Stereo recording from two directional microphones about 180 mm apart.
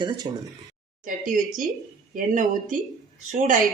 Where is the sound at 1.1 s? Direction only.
50° right (ahead or behind).